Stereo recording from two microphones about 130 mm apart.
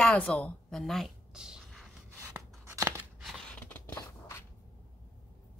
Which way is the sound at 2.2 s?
25° right (ahead or behind).